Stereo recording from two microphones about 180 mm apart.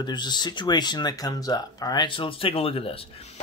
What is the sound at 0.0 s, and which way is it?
Speech, 25° left (ahead or behind).